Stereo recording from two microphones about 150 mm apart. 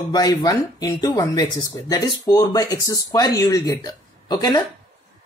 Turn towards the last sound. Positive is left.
turn(degrees=25)  # may be behind; listen again after turning